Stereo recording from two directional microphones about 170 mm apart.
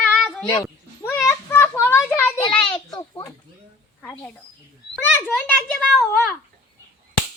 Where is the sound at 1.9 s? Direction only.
15° left (ahead or behind).